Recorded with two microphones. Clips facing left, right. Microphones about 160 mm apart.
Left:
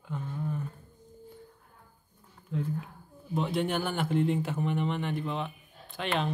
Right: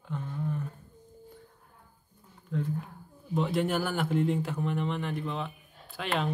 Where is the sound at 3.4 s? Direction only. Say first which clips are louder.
Right 1 dB; centre (ahead or behind).